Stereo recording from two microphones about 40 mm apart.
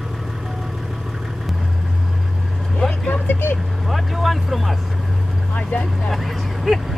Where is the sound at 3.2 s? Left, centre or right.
Left.